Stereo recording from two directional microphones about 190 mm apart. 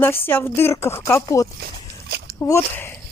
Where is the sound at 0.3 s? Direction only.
10° left (ahead or behind).